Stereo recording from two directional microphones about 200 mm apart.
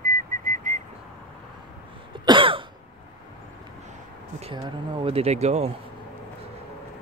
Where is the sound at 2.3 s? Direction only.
25° right (ahead or behind).